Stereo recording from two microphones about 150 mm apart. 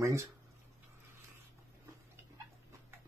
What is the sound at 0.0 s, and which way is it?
Speech, 20° right (ahead or behind).